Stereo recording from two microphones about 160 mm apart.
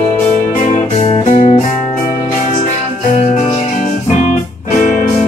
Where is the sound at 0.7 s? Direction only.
45° left (ahead or behind).